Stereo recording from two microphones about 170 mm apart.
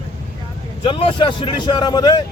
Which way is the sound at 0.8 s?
30° left (ahead or behind).